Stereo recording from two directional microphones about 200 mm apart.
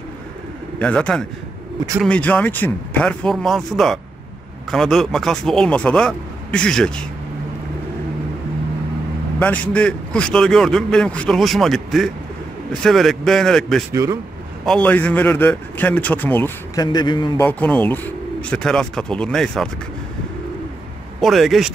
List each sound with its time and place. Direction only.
0.7 s a man's voice: 5° left (ahead or behind)
9.4 s a man's voice: 5° left (ahead or behind)
17.5 s a man's voice: 5° left (ahead or behind)
21.2 s a man's voice: centre (ahead or behind)